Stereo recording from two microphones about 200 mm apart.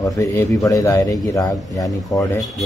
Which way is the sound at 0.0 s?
15° left (ahead or behind).